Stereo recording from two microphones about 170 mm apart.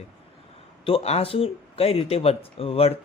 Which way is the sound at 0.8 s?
35° left (ahead or behind).